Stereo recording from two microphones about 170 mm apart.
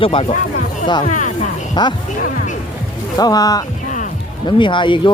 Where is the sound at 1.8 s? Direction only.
25° left (ahead or behind).